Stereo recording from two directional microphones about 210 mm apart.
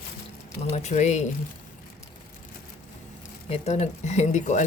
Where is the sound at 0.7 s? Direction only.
30° left (ahead or behind).